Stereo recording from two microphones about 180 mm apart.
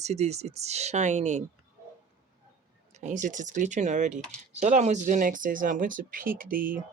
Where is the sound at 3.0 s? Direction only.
45° right (ahead or behind).